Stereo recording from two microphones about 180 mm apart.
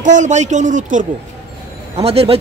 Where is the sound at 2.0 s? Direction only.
35° right (ahead or behind).